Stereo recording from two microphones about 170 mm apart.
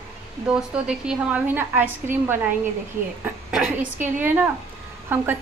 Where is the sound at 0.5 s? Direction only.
5° right (ahead or behind).